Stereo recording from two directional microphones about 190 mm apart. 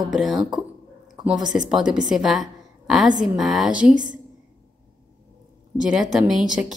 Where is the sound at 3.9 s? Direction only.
45° right (ahead or behind).